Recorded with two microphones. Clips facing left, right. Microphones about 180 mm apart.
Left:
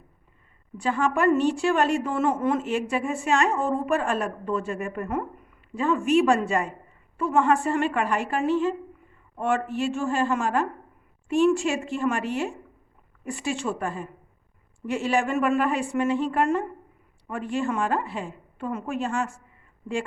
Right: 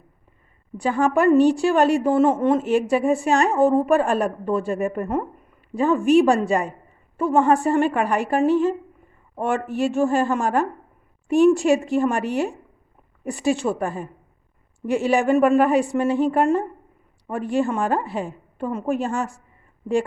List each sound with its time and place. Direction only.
0.8 s a woman's voice: 40° right (ahead or behind)
9.7 s a woman's voice: 40° right (ahead or behind)